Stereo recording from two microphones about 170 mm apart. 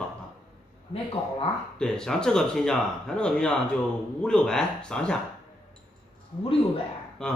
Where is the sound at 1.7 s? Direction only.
5° left (ahead or behind).